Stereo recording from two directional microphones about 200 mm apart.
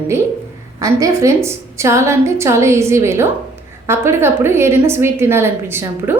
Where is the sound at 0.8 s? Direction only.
15° right (ahead or behind).